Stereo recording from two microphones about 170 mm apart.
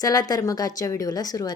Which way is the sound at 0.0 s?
20° left (ahead or behind).